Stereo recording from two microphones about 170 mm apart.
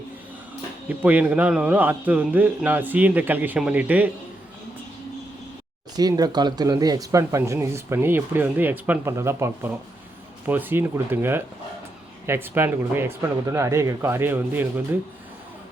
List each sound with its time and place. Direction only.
0.9 s speech: 10° right (ahead or behind)
6.0 s speech: 25° right (ahead or behind)